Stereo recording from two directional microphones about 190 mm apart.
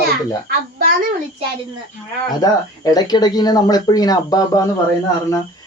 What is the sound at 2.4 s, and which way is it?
Speech, 20° left (ahead or behind).